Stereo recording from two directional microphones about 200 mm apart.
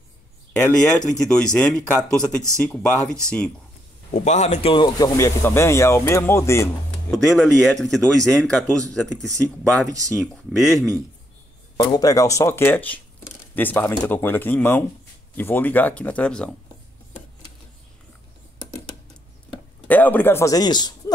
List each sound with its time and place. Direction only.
0.7 s speech: 5° left (ahead or behind)
4.1 s speech: 35° left (ahead or behind); by 6.7 s 15° left (ahead or behind)
7.1 s speech: centre (ahead or behind)
11.7 s speech: 20° left (ahead or behind)
19.9 s speech: 10° left (ahead or behind)